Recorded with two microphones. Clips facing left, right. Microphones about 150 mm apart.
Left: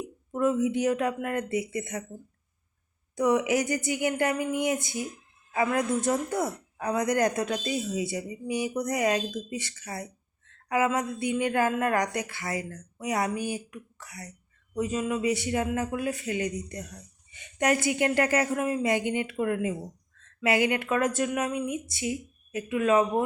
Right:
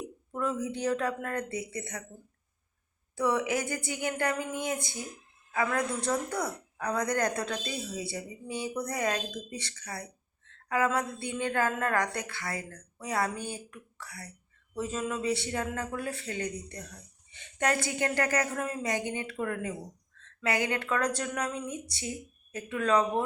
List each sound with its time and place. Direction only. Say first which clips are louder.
0.3 s a man's voice: left 7 dB; 20° left (ahead or behind)
3.2 s a man's voice: left 5 dB; 20° left (ahead or behind)